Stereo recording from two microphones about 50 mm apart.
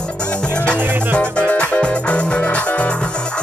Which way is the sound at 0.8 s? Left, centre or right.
Right.